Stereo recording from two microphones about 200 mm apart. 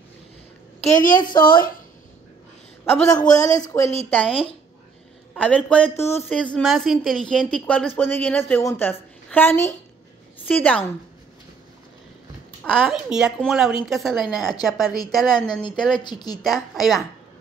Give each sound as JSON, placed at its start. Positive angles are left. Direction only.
{"t": 0.7, "sound": "a child's voice", "side_deg": 35}
{"t": 1.2, "sound": "a woman's voice", "side_deg": 20}
{"t": 2.8, "sound": "a woman's voice", "side_deg": 15}
{"t": 12.6, "sound": "a woman's voice", "side_deg": 0}
{"t": 16.0, "sound": "a woman's voice", "side_deg": 20}
{"t": 16.4, "sound": "a woman's voice", "side_deg": 0}